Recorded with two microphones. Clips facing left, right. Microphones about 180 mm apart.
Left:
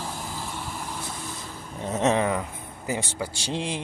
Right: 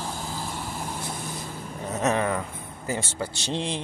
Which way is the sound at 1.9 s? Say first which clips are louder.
Left 2 dB; 25° left (ahead or behind).